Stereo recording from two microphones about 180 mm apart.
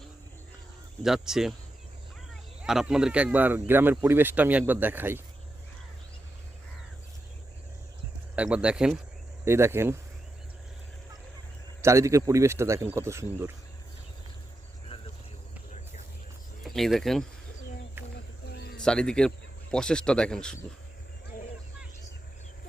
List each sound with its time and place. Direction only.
1.0 s speech: centre (ahead or behind)
8.4 s speech: 5° right (ahead or behind)
9.4 s speech: 15° right (ahead or behind)
11.8 s speech: 15° right (ahead or behind)
16.6 s speech: centre (ahead or behind)
18.5 s a sound: 65° left (ahead or behind)
18.8 s speech: 5° left (ahead or behind)